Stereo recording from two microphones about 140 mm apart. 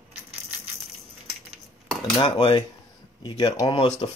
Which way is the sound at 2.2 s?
30° left (ahead or behind).